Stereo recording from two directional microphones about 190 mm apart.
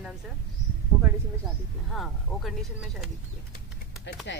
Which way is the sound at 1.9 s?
Centre (ahead or behind).